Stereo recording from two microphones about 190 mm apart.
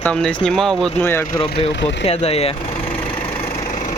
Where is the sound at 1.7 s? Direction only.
70° left (ahead or behind).